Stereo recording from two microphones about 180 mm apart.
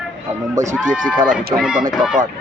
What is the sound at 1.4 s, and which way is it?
Speech, 60° right (ahead or behind).